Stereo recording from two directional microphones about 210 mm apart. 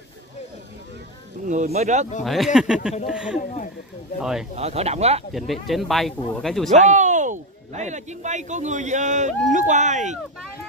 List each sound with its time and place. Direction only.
1.5 s a man's voice: 35° right (ahead or behind)
2.2 s speech: centre (ahead or behind)
3.3 s speech: 40° left (ahead or behind)
4.2 s speech: centre (ahead or behind)
4.6 s speech: 30° right (ahead or behind)
5.3 s speech: centre (ahead or behind)
6.7 s a man's voice: 35° right (ahead or behind)